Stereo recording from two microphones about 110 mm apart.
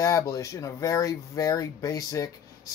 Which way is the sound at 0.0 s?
30° left (ahead or behind).